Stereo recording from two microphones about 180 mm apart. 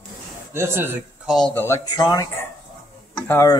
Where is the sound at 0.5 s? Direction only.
15° right (ahead or behind).